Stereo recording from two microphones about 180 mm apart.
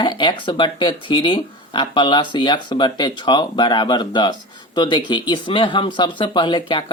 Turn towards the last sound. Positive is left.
turn(degrees=25)  # may be behind; listen again after turning